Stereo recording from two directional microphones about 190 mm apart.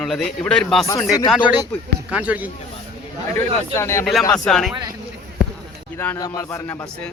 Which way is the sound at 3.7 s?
15° left (ahead or behind).